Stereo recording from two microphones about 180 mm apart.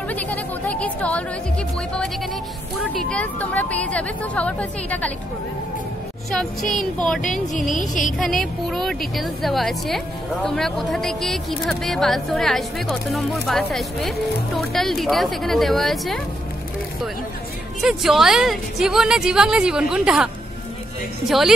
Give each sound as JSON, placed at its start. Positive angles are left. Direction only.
{"t": 0.1, "sound": "speech", "side_deg": 10}
{"t": 2.8, "sound": "speech", "side_deg": 0}
{"t": 6.3, "sound": "a woman's voice", "side_deg": 5}
{"t": 7.7, "sound": "music", "side_deg": 45}
{"t": 8.2, "sound": "a woman's voice", "side_deg": 0}
{"t": 17.8, "sound": "a woman's voice", "side_deg": -5}
{"t": 21.3, "sound": "a woman's voice", "side_deg": 0}